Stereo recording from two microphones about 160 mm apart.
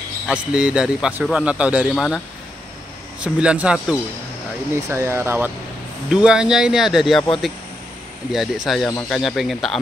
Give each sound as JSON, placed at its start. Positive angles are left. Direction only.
{"t": 0.3, "sound": "a man's voice", "side_deg": -5}
{"t": 2.0, "sound": "a man's voice", "side_deg": 5}
{"t": 4.8, "sound": "a man's voice", "side_deg": -15}
{"t": 8.3, "sound": "speech", "side_deg": 0}